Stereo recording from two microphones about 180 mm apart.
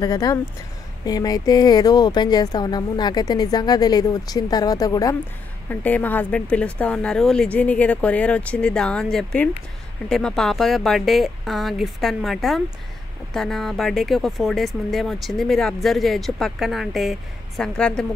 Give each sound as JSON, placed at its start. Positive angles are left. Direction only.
{"t": 0.0, "sound": "speech", "side_deg": 20}
{"t": 5.7, "sound": "speech", "side_deg": 10}